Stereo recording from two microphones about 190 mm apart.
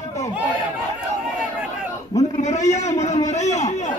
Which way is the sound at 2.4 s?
40° left (ahead or behind).